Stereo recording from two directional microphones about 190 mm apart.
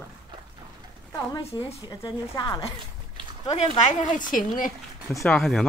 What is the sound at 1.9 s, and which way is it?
Speech, 20° left (ahead or behind).